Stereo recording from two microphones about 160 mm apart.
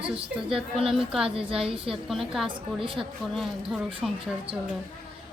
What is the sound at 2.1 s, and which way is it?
Speech, centre (ahead or behind).